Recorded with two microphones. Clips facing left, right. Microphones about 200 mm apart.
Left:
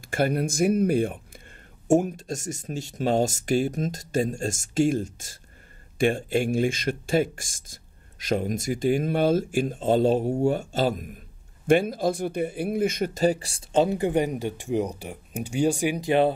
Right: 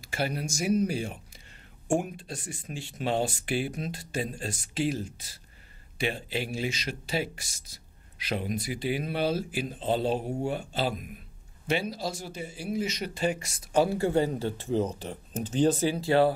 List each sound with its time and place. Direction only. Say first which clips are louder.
0.0 s speech: left 7 dB; 50° left (ahead or behind)
2.0 s speech: left 7 dB; 45° left (ahead or behind); by 16.3 s 20° left (ahead or behind)